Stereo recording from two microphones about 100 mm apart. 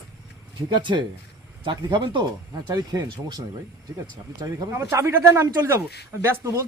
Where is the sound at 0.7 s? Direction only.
50° right (ahead or behind).